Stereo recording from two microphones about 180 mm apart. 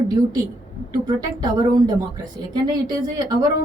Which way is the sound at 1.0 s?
20° right (ahead or behind).